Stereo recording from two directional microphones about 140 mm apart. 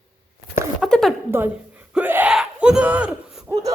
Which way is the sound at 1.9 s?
10° right (ahead or behind).